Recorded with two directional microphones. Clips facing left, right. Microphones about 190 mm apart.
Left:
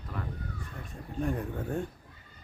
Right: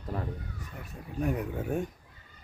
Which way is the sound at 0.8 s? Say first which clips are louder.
Right 1 dB; 10° right (ahead or behind).